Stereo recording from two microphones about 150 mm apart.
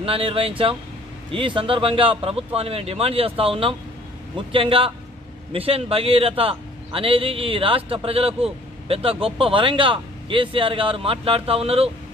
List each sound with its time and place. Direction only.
0.0 s a man's voice: 40° right (ahead or behind)